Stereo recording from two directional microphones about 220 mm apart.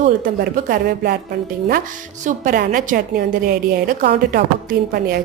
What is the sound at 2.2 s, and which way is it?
A woman's voice, 35° right (ahead or behind).